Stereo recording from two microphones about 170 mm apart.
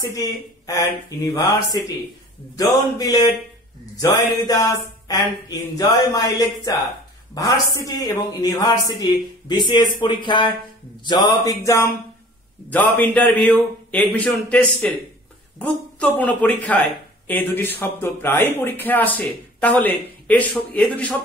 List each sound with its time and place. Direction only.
0.1 s a sound: 20° left (ahead or behind)
12.6 s speech: 10° left (ahead or behind)
16.2 s speech: 10° left (ahead or behind)